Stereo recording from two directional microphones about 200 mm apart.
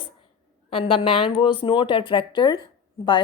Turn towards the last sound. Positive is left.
turn(degrees=25)  # may be behind; listen again after turning